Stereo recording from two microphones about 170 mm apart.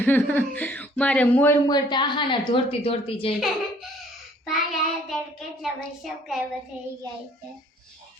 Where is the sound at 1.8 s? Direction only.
25° left (ahead or behind).